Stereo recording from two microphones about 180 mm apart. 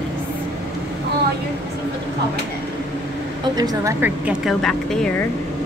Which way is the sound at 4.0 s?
5° right (ahead or behind).